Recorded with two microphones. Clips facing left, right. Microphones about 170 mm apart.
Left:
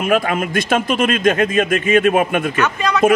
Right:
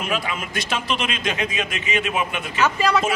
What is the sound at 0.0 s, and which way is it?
A man's voice, 50° left (ahead or behind).